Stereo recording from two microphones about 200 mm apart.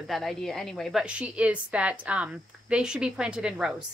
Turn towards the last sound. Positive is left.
turn(degrees=-5)  # may be behind; listen again after turning